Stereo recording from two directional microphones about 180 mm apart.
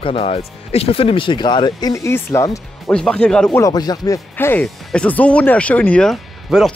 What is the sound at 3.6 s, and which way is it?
Speech, 20° left (ahead or behind).